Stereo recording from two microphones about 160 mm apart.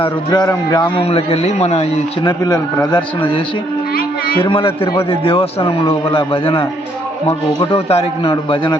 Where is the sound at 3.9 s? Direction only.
70° left (ahead or behind).